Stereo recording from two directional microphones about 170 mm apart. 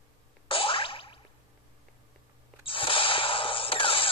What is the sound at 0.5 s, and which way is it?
Boing, 30° left (ahead or behind).